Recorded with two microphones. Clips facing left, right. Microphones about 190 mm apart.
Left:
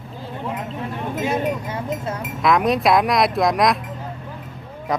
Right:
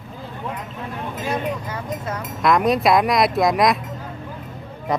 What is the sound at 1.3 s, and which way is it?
Speech, 30° left (ahead or behind).